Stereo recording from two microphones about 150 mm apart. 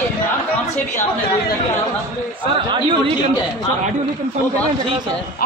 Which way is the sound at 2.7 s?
35° right (ahead or behind).